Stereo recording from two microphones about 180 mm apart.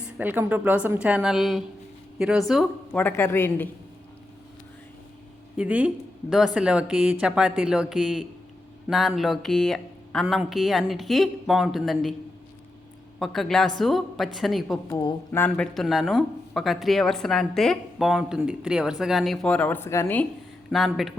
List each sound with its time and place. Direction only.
0.2 s a woman's voice: 10° right (ahead or behind)
3.0 s speech: 15° left (ahead or behind)
5.5 s a woman's voice: 10° right (ahead or behind)
13.1 s speech: centre (ahead or behind)
14.8 s a woman's voice: 20° left (ahead or behind)
15.3 s speech: 10° left (ahead or behind)
20.7 s speech: centre (ahead or behind)